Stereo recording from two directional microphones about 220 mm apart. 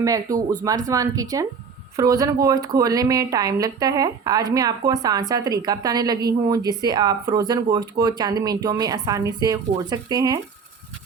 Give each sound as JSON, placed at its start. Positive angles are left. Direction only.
{"t": 0.0, "sound": "speech", "side_deg": -15}